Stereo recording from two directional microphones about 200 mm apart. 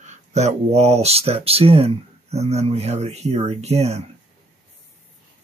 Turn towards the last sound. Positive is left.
turn(degrees=-35)  # may be behind; listen again after turning